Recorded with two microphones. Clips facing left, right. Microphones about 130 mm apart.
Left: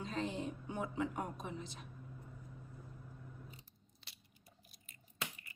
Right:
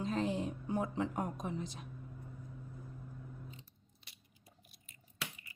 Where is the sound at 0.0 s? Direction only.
40° right (ahead or behind).